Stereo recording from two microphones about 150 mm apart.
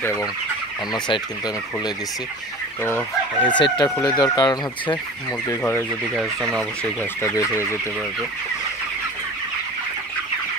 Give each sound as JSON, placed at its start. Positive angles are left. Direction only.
{"t": 0.9, "sound": "chicken", "side_deg": 30}
{"t": 2.8, "sound": "speech", "side_deg": 15}
{"t": 3.4, "sound": "chicken", "side_deg": 30}
{"t": 4.0, "sound": "speech", "side_deg": 25}
{"t": 5.6, "sound": "speech", "side_deg": 15}
{"t": 6.1, "sound": "speech", "side_deg": 0}